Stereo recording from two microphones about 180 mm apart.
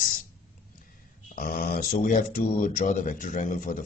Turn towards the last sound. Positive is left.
turn(degrees=45)  # may be behind; listen again after turning